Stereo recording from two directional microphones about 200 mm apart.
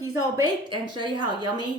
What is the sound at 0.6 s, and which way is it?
Speech, 25° right (ahead or behind).